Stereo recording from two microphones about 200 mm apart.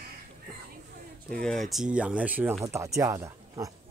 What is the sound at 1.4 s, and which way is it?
Speech, centre (ahead or behind).